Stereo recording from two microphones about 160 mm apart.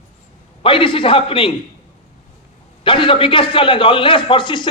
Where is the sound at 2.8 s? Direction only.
30° left (ahead or behind).